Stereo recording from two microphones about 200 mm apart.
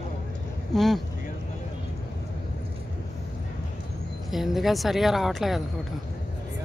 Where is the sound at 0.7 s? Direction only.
Centre (ahead or behind).